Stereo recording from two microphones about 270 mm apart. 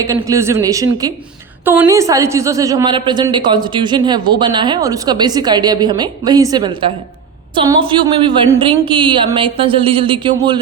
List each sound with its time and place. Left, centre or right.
0.0 s a woman's voice: centre